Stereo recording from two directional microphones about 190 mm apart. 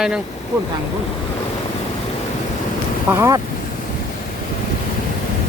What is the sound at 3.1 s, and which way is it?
Speech, 15° right (ahead or behind).